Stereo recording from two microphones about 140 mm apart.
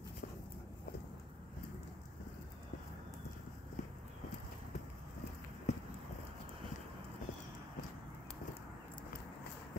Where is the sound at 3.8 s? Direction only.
60° left (ahead or behind).